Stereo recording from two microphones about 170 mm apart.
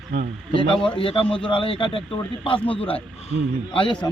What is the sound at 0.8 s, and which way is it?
A man's voice, 30° left (ahead or behind).